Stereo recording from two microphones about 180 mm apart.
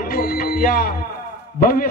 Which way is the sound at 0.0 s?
55° left (ahead or behind).